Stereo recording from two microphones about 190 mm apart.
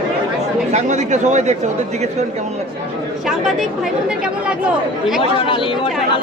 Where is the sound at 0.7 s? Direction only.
40° right (ahead or behind).